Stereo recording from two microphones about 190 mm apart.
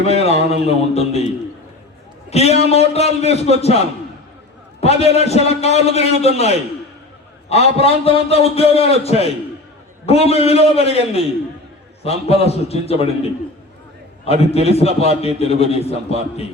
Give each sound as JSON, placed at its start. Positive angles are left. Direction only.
{"t": 0.0, "sound": "a man's voice", "side_deg": 35}
{"t": 2.3, "sound": "a man's voice", "side_deg": 35}
{"t": 7.5, "sound": "a man's voice", "side_deg": 30}